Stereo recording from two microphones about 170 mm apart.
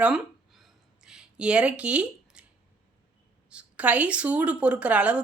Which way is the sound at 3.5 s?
5° right (ahead or behind).